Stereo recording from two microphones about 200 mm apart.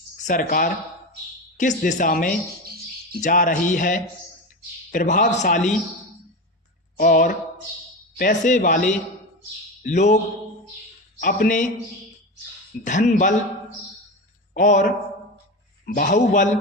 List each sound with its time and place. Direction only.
0.2 s a man's voice: 40° left (ahead or behind)
6.9 s a man's voice: 50° left (ahead or behind)
11.2 s a man's voice: 45° left (ahead or behind)
12.8 s a man's voice: 40° left (ahead or behind)
14.5 s a man's voice: 35° left (ahead or behind)
16.0 s a man's voice: 40° left (ahead or behind)